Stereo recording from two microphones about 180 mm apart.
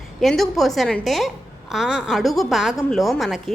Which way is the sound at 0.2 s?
Centre (ahead or behind).